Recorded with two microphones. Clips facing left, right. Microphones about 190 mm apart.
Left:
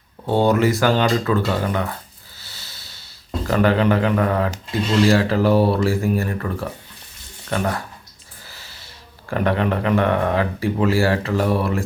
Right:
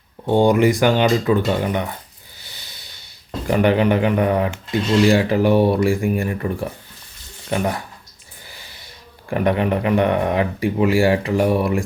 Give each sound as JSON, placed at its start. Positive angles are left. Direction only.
{"t": 0.3, "sound": "speech", "side_deg": -15}
{"t": 2.4, "sound": "snort", "side_deg": -15}
{"t": 3.4, "sound": "speech", "side_deg": -20}
{"t": 8.4, "sound": "snort", "side_deg": -15}
{"t": 9.3, "sound": "speech", "side_deg": -15}